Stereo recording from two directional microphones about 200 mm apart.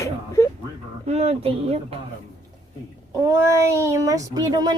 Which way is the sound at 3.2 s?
15° right (ahead or behind).